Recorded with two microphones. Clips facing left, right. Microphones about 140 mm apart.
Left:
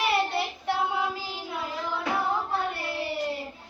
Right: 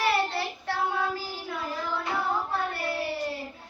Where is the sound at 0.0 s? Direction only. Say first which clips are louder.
Even; 20° left (ahead or behind).